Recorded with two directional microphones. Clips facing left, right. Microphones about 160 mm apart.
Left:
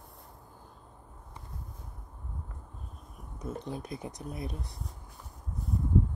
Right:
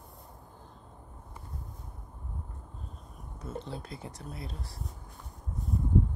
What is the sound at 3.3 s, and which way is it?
Speech, 15° left (ahead or behind).